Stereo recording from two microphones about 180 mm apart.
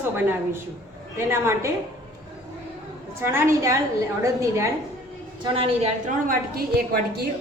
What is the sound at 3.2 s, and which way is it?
A woman's voice, 15° right (ahead or behind).